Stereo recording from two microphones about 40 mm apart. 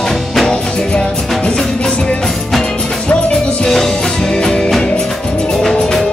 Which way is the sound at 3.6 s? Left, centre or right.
Centre.